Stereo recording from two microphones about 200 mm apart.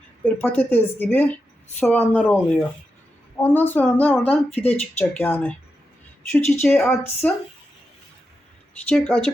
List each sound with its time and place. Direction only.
0.3 s speech: 10° left (ahead or behind)
4.4 s speech: 30° left (ahead or behind)
4.7 s speech: 10° left (ahead or behind)
8.9 s speech: 5° left (ahead or behind)